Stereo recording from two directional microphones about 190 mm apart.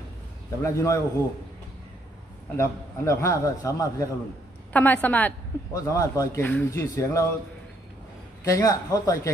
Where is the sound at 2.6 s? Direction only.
15° left (ahead or behind).